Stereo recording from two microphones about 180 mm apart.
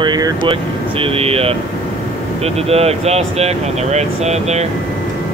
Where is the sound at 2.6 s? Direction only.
35° right (ahead or behind).